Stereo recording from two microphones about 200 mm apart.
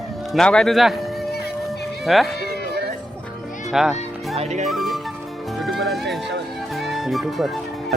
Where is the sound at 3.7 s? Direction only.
Centre (ahead or behind).